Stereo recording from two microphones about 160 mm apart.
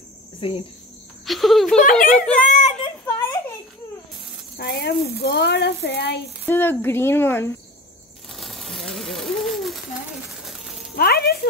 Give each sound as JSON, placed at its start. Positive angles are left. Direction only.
{"t": 0.4, "sound": "cricket", "side_deg": 35}
{"t": 1.2, "sound": "music", "side_deg": 0}
{"t": 1.8, "sound": "speech", "side_deg": 55}
{"t": 2.1, "sound": "speech", "side_deg": 5}
{"t": 3.1, "sound": "a sound", "side_deg": 20}
{"t": 4.6, "sound": "speech", "side_deg": 85}
{"t": 6.4, "sound": "speech", "side_deg": 15}
{"t": 8.3, "sound": "a sound", "side_deg": 0}
{"t": 11.0, "sound": "speech", "side_deg": 75}